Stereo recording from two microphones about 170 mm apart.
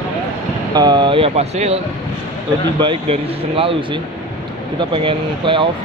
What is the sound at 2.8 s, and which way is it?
Speech, 30° right (ahead or behind).